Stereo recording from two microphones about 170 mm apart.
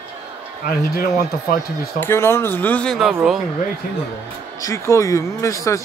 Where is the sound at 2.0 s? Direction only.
15° left (ahead or behind); by 3.3 s centre (ahead or behind).